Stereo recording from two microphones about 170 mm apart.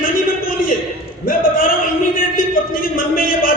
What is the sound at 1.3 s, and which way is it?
Speech, 55° left (ahead or behind).